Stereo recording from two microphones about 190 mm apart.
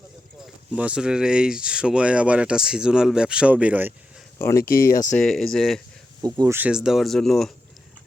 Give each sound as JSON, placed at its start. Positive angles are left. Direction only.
{"t": 0.4, "sound": "speech", "side_deg": -5}
{"t": 4.4, "sound": "speech", "side_deg": 15}
{"t": 4.6, "sound": "speech", "side_deg": 50}
{"t": 5.1, "sound": "speech", "side_deg": 5}
{"t": 6.2, "sound": "speech", "side_deg": -20}